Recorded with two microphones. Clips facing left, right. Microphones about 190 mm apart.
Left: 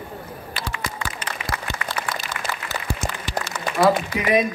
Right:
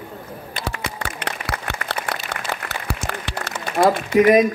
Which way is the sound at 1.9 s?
65° right (ahead or behind).